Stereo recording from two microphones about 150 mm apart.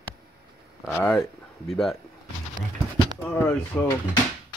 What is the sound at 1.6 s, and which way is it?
Speech, centre (ahead or behind).